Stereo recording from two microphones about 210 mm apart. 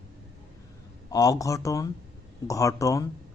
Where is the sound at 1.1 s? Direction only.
15° left (ahead or behind).